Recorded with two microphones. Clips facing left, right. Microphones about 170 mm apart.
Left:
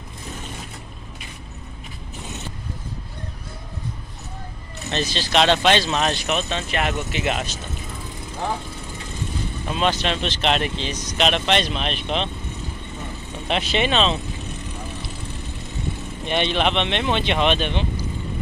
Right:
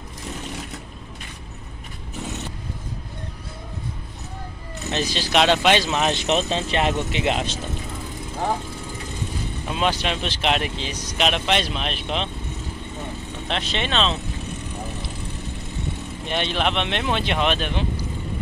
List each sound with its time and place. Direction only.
4.9 s speech: 10° right (ahead or behind)
6.2 s speech: 30° right (ahead or behind)
9.7 s speech: 10° right (ahead or behind)
13.5 s speech: 5° left (ahead or behind)
16.3 s speech: centre (ahead or behind)